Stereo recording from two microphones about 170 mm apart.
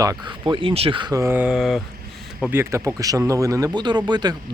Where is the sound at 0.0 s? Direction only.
25° right (ahead or behind); by 1.8 s centre (ahead or behind).